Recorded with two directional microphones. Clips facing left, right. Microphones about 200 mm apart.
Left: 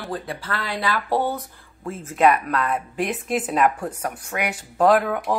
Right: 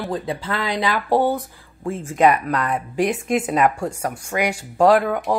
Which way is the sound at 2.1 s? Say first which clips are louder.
Right 1 dB; centre (ahead or behind).